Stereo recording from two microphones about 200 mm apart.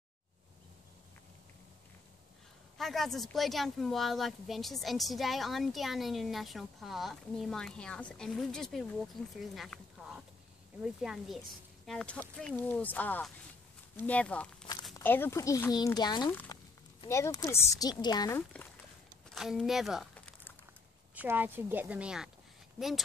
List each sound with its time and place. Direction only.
2.8 s speech: centre (ahead or behind); by 16.3 s 20° left (ahead or behind)
16.3 s speech: 10° left (ahead or behind)
19.2 s crumpling: centre (ahead or behind)
21.1 s speech: 10° right (ahead or behind)